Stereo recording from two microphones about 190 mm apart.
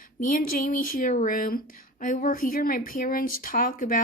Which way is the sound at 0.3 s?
45° left (ahead or behind).